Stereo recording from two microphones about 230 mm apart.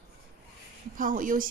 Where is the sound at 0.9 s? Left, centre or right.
Right.